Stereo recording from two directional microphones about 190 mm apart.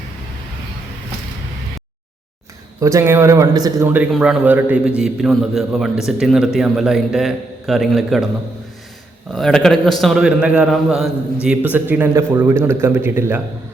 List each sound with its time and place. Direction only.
2.8 s a man's voice: 15° right (ahead or behind)
3.8 s a man's voice: 5° right (ahead or behind)
9.3 s a man's voice: 5° left (ahead or behind)